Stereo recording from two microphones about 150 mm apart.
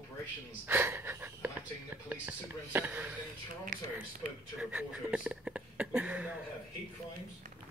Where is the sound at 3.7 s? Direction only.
60° right (ahead or behind).